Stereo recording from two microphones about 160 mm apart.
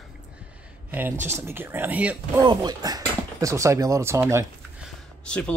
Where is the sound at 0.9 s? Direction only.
10° right (ahead or behind).